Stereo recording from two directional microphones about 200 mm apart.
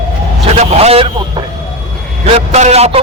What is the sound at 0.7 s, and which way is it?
A man's voice, 30° right (ahead or behind).